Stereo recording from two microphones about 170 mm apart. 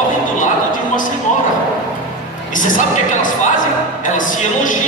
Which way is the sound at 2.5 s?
50° left (ahead or behind).